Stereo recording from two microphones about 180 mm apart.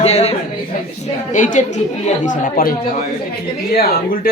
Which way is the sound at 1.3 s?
45° left (ahead or behind).